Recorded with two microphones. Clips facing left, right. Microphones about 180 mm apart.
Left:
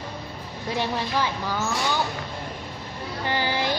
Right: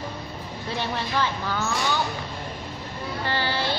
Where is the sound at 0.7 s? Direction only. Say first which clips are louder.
Left 1 dB; 15° left (ahead or behind).